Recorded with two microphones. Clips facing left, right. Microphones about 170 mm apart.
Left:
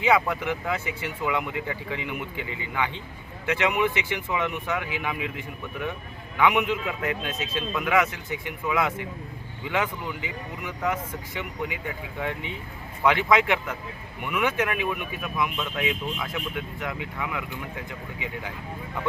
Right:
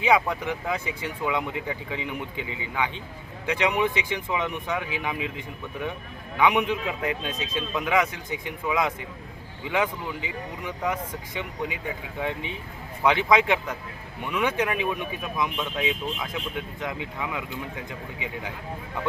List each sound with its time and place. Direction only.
0.0 s speech: 15° right (ahead or behind)
12.2 s speech: 15° right (ahead or behind)